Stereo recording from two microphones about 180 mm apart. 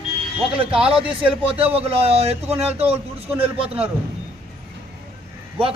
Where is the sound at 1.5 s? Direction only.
35° right (ahead or behind).